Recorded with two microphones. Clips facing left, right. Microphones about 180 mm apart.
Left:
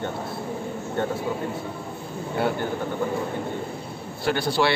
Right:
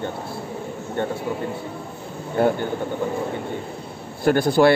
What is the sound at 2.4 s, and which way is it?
Speech, 50° right (ahead or behind).